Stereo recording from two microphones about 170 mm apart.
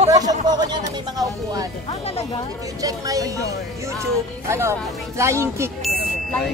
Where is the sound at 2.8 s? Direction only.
20° right (ahead or behind).